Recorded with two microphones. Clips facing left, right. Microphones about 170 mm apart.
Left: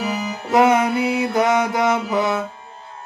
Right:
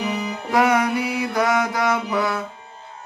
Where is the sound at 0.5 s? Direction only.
25° left (ahead or behind).